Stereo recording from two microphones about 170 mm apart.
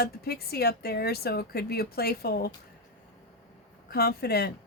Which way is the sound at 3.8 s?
65° left (ahead or behind).